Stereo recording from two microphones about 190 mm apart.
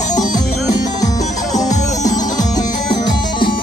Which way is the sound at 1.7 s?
40° left (ahead or behind).